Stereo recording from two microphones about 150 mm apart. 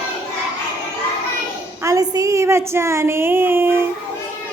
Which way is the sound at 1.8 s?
20° right (ahead or behind).